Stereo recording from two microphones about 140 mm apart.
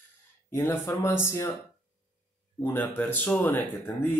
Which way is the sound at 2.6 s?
15° left (ahead or behind).